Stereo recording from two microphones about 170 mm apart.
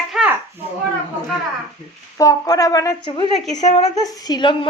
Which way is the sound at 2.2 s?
20° left (ahead or behind).